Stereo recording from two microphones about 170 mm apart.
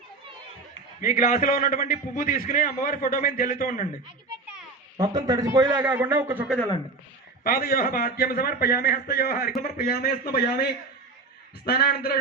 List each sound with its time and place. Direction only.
1.0 s a man's voice: 55° left (ahead or behind)
5.1 s a man's voice: 20° right (ahead or behind)
7.4 s a man's voice: 60° left (ahead or behind)